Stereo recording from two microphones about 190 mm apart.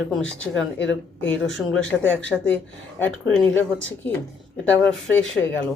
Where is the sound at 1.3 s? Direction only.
5° left (ahead or behind).